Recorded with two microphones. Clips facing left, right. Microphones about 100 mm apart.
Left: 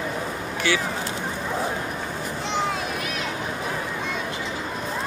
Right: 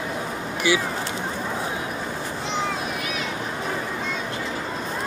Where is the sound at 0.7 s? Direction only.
10° right (ahead or behind).